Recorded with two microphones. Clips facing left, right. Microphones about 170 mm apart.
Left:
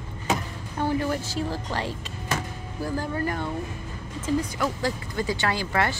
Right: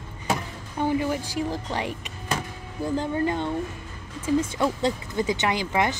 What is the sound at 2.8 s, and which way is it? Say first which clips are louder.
Dishes: right 3 dB; 20° right (ahead or behind).